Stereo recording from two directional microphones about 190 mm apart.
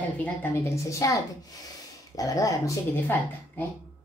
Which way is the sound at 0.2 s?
15° left (ahead or behind).